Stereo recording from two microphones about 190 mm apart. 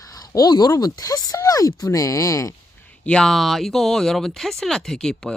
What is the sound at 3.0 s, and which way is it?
Speech, 5° left (ahead or behind).